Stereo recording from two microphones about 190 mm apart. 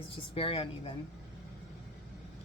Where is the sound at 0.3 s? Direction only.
30° left (ahead or behind).